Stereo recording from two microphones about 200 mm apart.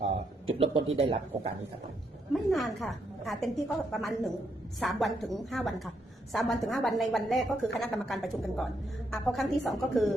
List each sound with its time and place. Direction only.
0.0 s speech: 30° right (ahead or behind)
2.3 s a woman's voice: centre (ahead or behind)